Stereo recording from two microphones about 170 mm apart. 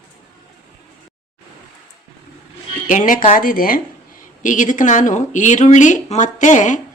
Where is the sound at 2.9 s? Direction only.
50° left (ahead or behind).